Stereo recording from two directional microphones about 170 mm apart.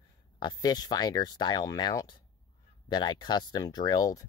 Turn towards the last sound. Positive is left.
turn(degrees=20)  # may be behind; listen again after turning